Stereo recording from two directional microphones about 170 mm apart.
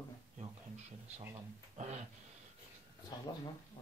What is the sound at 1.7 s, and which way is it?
Speech, 40° right (ahead or behind).